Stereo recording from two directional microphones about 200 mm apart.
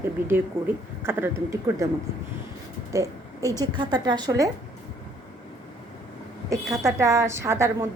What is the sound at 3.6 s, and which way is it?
Speech, 20° right (ahead or behind).